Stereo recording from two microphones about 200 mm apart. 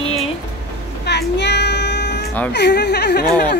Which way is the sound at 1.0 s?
55° left (ahead or behind).